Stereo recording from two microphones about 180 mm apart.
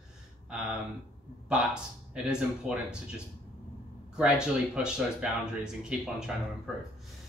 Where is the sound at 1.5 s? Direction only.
5° right (ahead or behind).